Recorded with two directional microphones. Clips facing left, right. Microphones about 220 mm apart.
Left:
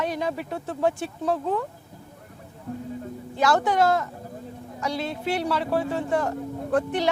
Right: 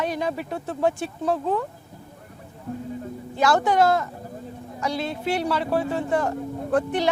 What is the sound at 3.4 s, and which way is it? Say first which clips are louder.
Speech: right 2 dB; 15° right (ahead or behind).